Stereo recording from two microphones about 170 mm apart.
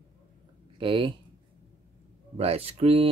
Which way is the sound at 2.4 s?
35° right (ahead or behind).